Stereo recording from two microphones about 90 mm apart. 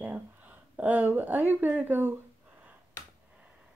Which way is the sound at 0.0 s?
15° right (ahead or behind).